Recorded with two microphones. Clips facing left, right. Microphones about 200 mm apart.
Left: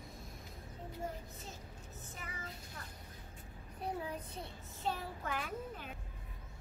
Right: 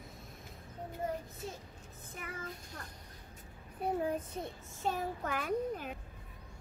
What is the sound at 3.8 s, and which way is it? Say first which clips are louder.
A child's voice: right 7 dB; 50° right (ahead or behind).